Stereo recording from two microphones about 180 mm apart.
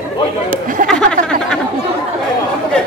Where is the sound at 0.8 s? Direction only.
5° left (ahead or behind).